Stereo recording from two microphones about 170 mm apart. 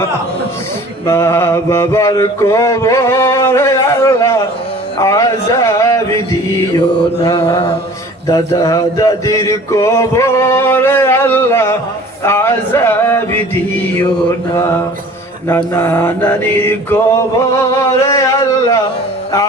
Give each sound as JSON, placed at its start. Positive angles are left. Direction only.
{"t": 1.0, "sound": "mantra", "side_deg": 15}
{"t": 8.3, "sound": "mantra", "side_deg": 20}
{"t": 15.4, "sound": "mantra", "side_deg": 15}
{"t": 17.7, "sound": "a sound", "side_deg": 20}